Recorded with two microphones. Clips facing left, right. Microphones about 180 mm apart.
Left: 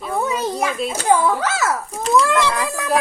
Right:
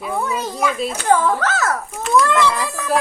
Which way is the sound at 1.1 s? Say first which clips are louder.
Even; 10° left (ahead or behind).